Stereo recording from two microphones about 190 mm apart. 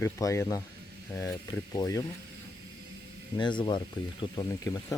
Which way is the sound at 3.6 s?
25° left (ahead or behind).